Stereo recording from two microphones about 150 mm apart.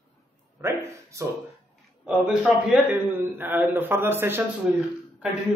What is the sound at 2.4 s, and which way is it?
A man's voice, 5° right (ahead or behind).